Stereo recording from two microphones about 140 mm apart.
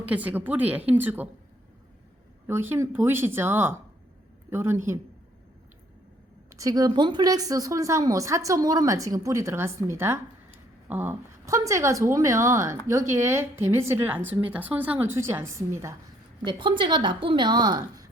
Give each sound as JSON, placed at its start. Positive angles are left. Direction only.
{"t": 0.0, "sound": "a woman's voice", "side_deg": -10}
{"t": 2.5, "sound": "a woman's voice", "side_deg": -15}
{"t": 6.6, "sound": "speech", "side_deg": -25}
{"t": 16.4, "sound": "a woman's voice", "side_deg": -35}